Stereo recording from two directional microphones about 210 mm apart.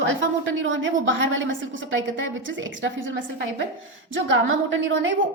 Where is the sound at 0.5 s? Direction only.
65° right (ahead or behind).